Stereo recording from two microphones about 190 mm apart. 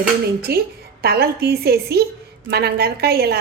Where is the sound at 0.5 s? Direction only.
55° right (ahead or behind).